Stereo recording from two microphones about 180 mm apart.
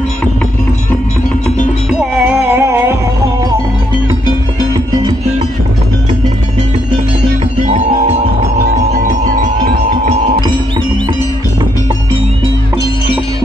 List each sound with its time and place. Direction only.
1.9 s music: 5° right (ahead or behind)
8.8 s music: 55° right (ahead or behind)